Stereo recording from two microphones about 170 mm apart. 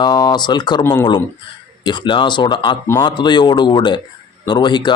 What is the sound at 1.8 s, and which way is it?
Speech, 25° left (ahead or behind).